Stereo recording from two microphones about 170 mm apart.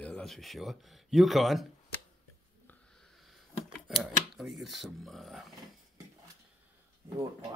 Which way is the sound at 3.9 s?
Centre (ahead or behind).